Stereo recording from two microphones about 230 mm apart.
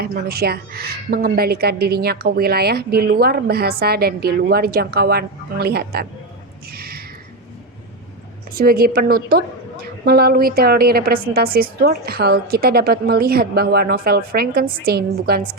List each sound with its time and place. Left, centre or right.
0.0 s a woman's voice: right
6.7 s a sound: right
8.5 s a woman's voice: right